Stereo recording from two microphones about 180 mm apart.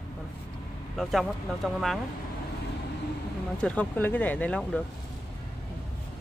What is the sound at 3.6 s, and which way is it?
Speech, 10° left (ahead or behind).